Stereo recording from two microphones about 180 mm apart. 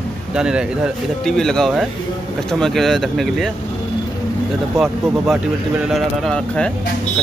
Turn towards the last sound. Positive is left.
turn(degrees=5)  # may be behind; listen again after turning